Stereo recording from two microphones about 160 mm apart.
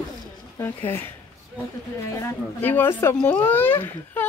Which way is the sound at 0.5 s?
15° left (ahead or behind).